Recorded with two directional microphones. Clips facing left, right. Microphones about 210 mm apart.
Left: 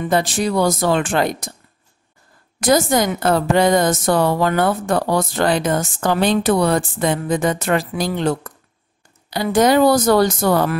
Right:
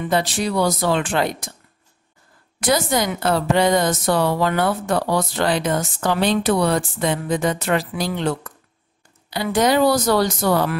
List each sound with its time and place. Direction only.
0.0 s a woman's voice: 50° left (ahead or behind)
2.6 s a woman's voice: 45° left (ahead or behind)